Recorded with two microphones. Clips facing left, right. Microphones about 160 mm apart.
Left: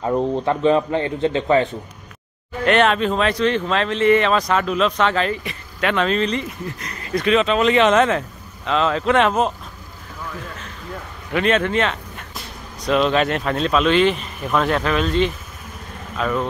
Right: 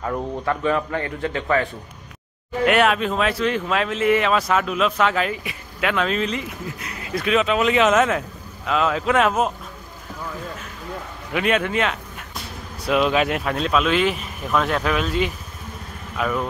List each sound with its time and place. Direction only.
0.0 s speech: 25° left (ahead or behind)
2.6 s speech: 5° right (ahead or behind)
11.3 s speech: 10° right (ahead or behind)